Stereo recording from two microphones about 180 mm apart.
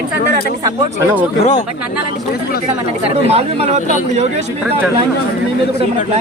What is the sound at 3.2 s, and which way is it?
Speech, 35° right (ahead or behind).